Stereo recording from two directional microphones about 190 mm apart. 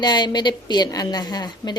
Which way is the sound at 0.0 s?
25° left (ahead or behind).